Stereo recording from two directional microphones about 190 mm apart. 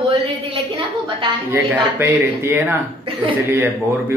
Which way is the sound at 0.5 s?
30° right (ahead or behind).